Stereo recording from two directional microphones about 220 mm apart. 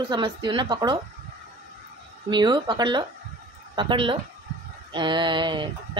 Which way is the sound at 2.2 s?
20° right (ahead or behind).